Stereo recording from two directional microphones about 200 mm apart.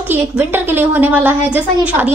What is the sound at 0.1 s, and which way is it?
A woman's voice, 10° right (ahead or behind).